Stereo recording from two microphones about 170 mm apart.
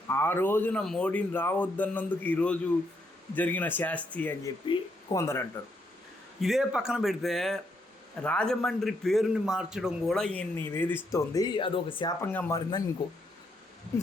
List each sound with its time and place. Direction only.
0.1 s speech: 15° left (ahead or behind)
6.4 s a man's voice: centre (ahead or behind); by 12.1 s 30° left (ahead or behind)
12.2 s speech: 10° left (ahead or behind)